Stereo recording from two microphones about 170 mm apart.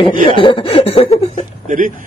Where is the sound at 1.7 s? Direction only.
50° right (ahead or behind).